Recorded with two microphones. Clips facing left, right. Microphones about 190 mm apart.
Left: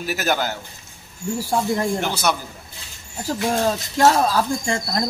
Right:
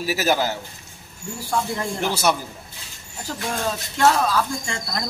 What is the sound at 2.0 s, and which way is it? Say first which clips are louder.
Speech: right 1 dB; 5° right (ahead or behind).